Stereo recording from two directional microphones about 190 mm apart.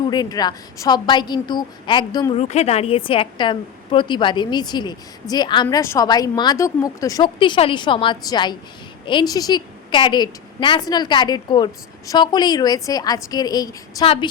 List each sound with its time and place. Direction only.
0.1 s a woman's voice: 20° left (ahead or behind)
2.4 s a woman's voice: 35° left (ahead or behind); by 14.1 s 20° left (ahead or behind)